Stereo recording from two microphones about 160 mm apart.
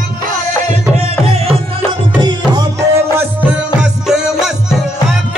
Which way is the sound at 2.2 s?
30° right (ahead or behind).